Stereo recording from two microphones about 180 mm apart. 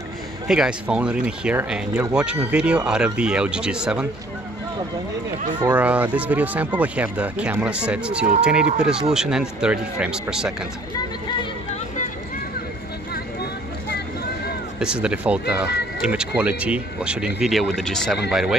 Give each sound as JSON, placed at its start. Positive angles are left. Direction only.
{"t": 0.5, "sound": "speech", "side_deg": -5}
{"t": 5.8, "sound": "speech", "side_deg": -10}
{"t": 13.8, "sound": "a sound", "side_deg": 65}
{"t": 14.8, "sound": "speech", "side_deg": -5}